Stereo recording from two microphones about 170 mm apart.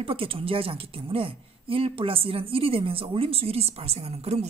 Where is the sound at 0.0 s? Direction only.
30° right (ahead or behind).